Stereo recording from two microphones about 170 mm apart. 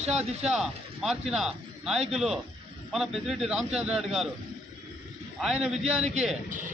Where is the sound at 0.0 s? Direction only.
40° right (ahead or behind).